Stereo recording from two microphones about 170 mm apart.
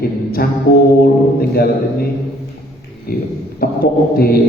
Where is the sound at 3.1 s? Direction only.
60° left (ahead or behind).